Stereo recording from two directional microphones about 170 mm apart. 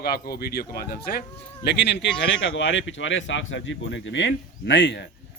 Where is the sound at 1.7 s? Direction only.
90° left.